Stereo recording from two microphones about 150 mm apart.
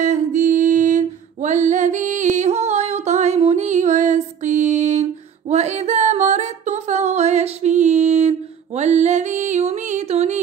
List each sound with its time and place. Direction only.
0.0 s music: 55° right (ahead or behind)